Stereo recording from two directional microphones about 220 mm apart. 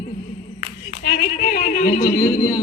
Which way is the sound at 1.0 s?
40° left (ahead or behind).